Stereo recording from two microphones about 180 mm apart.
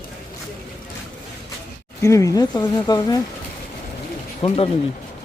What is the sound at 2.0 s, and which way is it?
Speech, 15° left (ahead or behind).